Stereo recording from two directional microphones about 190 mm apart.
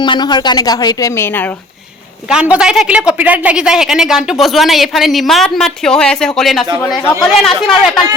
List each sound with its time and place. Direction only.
0.0 s a woman's voice: 25° left (ahead or behind)
2.3 s a woman's voice: 5° right (ahead or behind)